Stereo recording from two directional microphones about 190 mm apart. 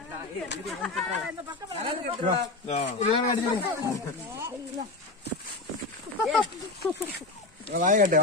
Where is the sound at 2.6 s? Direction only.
35° left (ahead or behind).